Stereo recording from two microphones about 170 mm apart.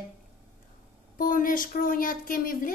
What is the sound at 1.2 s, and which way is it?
A woman's voice, 55° left (ahead or behind).